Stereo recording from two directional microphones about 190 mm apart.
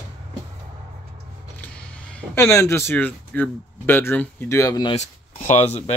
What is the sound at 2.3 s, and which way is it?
Speech, 15° left (ahead or behind).